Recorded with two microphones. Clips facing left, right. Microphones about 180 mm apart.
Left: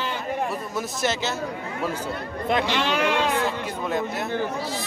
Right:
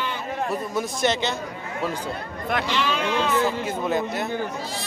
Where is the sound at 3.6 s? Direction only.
Centre (ahead or behind).